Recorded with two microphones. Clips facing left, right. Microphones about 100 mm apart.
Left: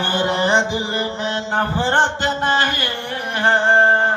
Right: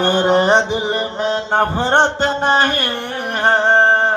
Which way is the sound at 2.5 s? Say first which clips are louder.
Right 3 dB; 50° right (ahead or behind).